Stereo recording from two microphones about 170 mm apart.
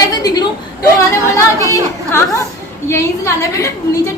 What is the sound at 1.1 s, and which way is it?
Chatter, 15° left (ahead or behind).